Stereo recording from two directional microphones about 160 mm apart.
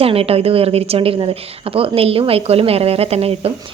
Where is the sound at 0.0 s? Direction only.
35° right (ahead or behind).